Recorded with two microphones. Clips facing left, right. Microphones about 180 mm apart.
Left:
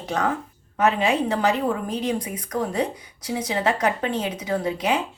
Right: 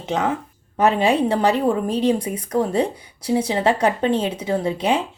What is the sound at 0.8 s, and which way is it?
A woman's voice, 30° right (ahead or behind).